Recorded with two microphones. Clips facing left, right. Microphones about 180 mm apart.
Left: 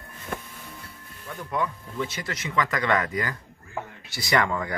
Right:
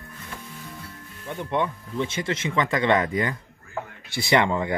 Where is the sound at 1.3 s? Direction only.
25° right (ahead or behind).